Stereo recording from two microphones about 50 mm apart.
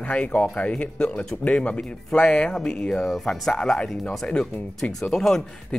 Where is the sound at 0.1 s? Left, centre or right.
Left.